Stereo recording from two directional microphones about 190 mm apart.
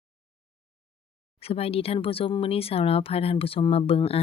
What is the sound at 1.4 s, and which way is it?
Speech, 30° left (ahead or behind).